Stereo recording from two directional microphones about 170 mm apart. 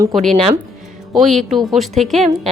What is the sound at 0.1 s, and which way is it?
A woman's voice, centre (ahead or behind).